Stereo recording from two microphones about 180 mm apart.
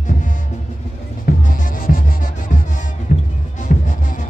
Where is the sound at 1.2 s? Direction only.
50° left (ahead or behind).